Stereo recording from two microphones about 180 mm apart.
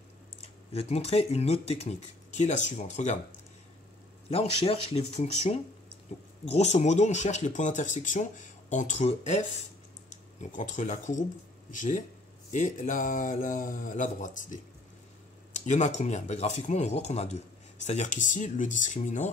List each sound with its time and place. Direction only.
0.4 s speech: 35° left (ahead or behind)
4.3 s speech: 35° left (ahead or behind)
10.4 s speech: 45° left (ahead or behind)